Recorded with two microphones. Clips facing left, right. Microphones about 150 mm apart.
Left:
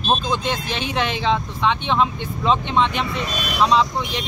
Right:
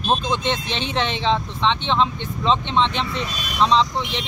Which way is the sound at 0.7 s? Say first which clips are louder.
Left 1 dB; 25° right (ahead or behind).